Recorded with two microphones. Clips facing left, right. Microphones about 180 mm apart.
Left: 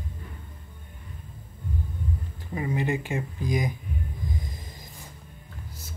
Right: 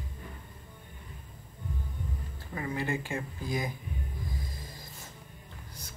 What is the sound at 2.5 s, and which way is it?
Speech, 20° left (ahead or behind).